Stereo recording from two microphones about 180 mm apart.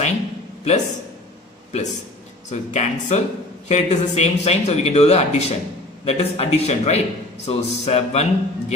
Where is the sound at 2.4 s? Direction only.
40° left (ahead or behind).